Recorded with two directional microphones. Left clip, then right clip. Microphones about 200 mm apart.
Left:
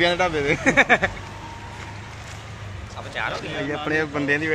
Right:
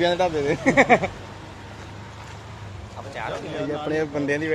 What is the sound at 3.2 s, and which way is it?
Speech, 5° right (ahead or behind).